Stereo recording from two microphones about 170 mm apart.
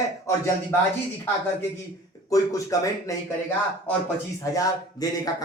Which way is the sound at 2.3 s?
20° left (ahead or behind).